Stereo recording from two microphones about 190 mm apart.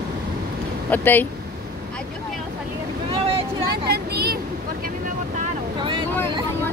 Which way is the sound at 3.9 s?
55° right (ahead or behind).